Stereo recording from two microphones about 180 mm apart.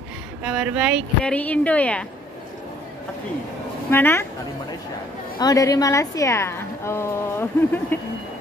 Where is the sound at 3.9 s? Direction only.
10° left (ahead or behind).